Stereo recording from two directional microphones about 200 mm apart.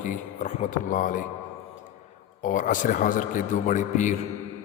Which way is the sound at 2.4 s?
40° left (ahead or behind).